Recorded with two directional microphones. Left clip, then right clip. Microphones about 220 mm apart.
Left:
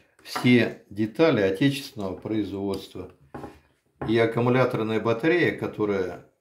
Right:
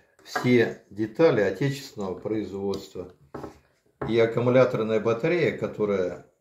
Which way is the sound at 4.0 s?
40° left (ahead or behind).